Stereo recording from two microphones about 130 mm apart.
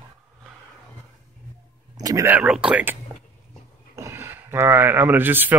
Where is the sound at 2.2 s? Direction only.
10° right (ahead or behind).